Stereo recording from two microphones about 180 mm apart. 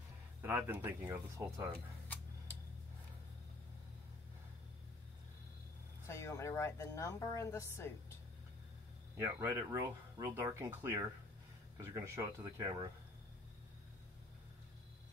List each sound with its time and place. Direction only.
0.4 s speech: 10° right (ahead or behind)
6.0 s speech: 15° left (ahead or behind)
9.1 s speech: 20° right (ahead or behind)